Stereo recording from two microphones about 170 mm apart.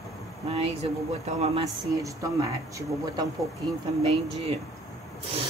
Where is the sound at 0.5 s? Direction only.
35° right (ahead or behind).